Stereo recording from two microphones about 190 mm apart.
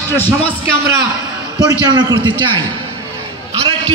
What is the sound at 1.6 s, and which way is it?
Speech, 20° right (ahead or behind).